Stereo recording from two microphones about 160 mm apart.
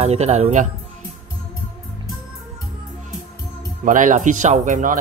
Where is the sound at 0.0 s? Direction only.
40° right (ahead or behind).